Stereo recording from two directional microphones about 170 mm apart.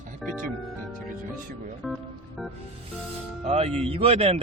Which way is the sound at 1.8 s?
Centre (ahead or behind).